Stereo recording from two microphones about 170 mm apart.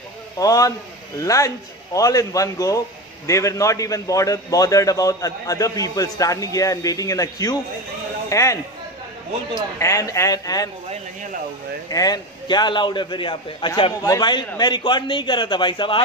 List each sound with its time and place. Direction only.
0.4 s a man's voice: 20° left (ahead or behind)
9.8 s a man's voice: 20° left (ahead or behind)
11.9 s a man's voice: 20° left (ahead or behind)